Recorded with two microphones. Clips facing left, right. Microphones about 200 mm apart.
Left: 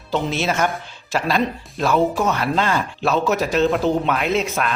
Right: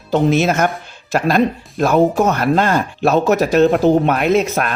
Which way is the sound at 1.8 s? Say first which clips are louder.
Right 5 dB; 50° right (ahead or behind).